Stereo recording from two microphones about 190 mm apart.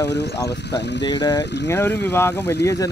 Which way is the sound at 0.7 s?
65° left (ahead or behind).